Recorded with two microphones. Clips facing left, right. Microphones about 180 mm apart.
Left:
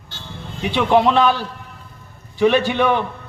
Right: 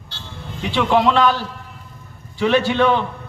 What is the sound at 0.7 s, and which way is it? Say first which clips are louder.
A man's voice: left 1 dB; 15° left (ahead or behind).